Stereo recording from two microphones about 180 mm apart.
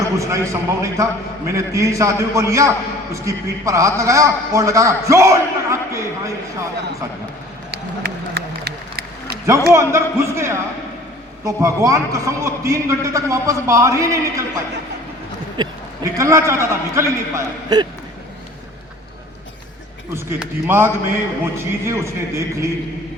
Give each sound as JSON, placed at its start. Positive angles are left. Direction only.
{"t": 0.2, "sound": "a man's voice", "side_deg": -15}
{"t": 7.7, "sound": "a sound", "side_deg": -65}
{"t": 9.7, "sound": "a man's voice", "side_deg": -15}
{"t": 16.1, "sound": "a man's voice", "side_deg": -15}
{"t": 20.1, "sound": "a man's voice", "side_deg": -10}